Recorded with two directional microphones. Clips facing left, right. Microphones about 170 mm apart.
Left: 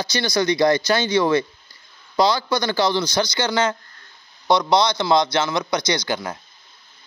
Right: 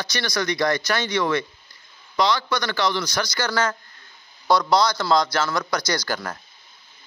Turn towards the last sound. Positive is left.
turn(degrees=15)  # may be behind; listen again after turning